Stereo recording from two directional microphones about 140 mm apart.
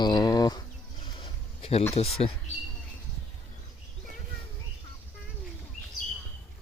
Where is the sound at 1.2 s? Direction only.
45° left (ahead or behind).